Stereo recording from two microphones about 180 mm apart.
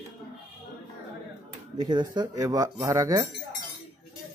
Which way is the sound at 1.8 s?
25° right (ahead or behind).